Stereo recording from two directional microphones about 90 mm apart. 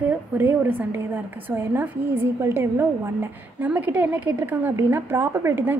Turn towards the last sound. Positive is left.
turn(degrees=-25)  # may be behind; listen again after turning